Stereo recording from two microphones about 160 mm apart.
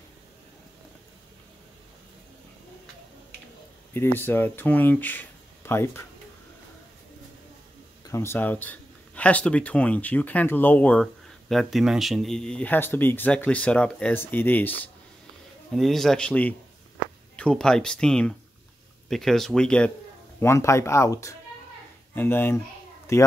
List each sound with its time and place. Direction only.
3.9 s speech: 15° left (ahead or behind)
8.1 s speech: 15° left (ahead or behind)
20.3 s speech: 15° left (ahead or behind)